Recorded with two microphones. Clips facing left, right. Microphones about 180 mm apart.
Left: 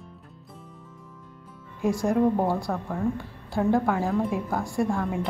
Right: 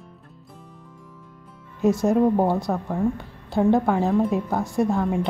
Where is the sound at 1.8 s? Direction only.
20° right (ahead or behind).